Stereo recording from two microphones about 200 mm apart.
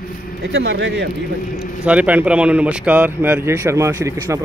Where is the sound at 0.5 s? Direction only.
60° right (ahead or behind).